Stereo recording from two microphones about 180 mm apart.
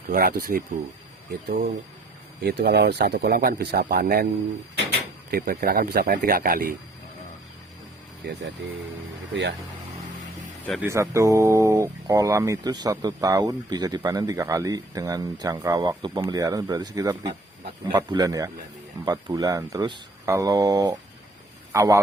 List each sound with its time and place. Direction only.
0.1 s speech: 50° right (ahead or behind)
5.3 s speech: 55° right (ahead or behind)
9.3 s speech: 80° right
10.8 s a man's voice: 15° right (ahead or behind)